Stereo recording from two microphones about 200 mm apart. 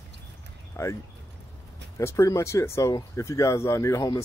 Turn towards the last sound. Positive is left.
turn(degrees=15)  # may be behind; listen again after turning